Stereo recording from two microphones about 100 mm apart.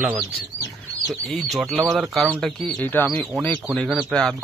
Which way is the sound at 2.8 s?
20° left (ahead or behind).